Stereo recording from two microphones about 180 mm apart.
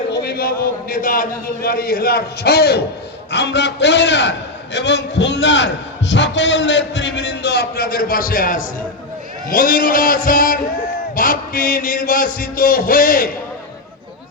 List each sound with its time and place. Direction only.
0.1 s a man's voice: 60° left (ahead or behind)